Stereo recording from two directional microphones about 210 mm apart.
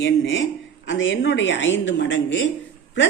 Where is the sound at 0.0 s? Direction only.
60° left (ahead or behind).